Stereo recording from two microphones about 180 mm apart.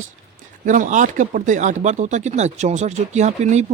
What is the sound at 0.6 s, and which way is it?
Speech, 45° right (ahead or behind).